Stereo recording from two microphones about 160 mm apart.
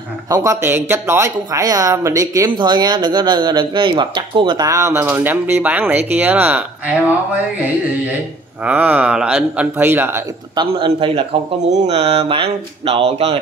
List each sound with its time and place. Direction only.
0.3 s speech: 20° right (ahead or behind)
8.6 s a man's voice: 10° right (ahead or behind)
10.5 s speech: 30° right (ahead or behind)